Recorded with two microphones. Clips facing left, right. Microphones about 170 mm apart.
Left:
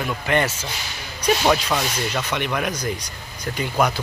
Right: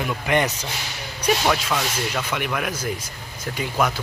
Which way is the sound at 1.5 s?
5° right (ahead or behind).